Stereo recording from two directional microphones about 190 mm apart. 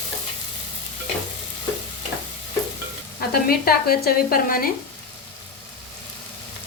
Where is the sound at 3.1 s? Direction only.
50° left (ahead or behind).